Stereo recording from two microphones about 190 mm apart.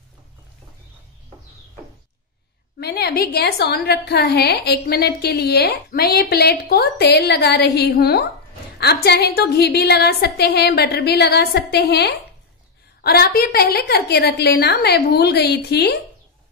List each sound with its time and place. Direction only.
2.8 s a woman's voice: 60° left (ahead or behind)